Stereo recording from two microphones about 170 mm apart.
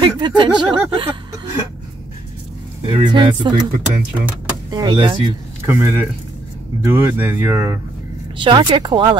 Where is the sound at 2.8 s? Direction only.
30° right (ahead or behind).